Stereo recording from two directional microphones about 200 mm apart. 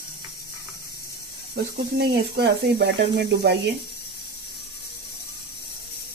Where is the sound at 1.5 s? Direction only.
55° right (ahead or behind).